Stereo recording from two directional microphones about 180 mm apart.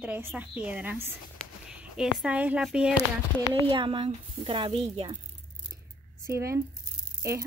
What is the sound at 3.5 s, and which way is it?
A woman's voice, 30° right (ahead or behind).